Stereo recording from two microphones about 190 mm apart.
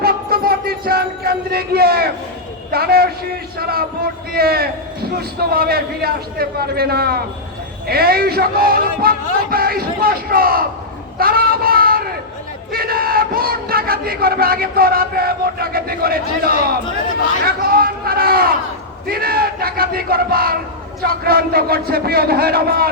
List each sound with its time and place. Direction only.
0.0 s a sound: 50° right (ahead or behind)
2.7 s a man's voice: 55° right (ahead or behind)
11.2 s child singing: 50° right (ahead or behind)
12.7 s crowd: 50° right (ahead or behind)
17.4 s a man's voice: 50° right (ahead or behind)